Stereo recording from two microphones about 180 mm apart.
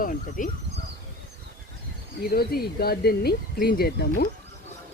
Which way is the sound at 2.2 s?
55° left (ahead or behind).